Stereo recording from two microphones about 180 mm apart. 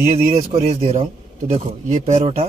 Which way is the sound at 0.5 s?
35° right (ahead or behind).